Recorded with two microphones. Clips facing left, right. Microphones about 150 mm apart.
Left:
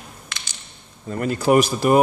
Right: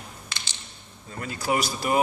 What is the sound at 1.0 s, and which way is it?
Speech, 60° left (ahead or behind).